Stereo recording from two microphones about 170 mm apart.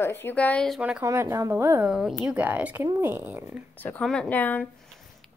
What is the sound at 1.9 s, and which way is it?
A woman's voice, 5° right (ahead or behind).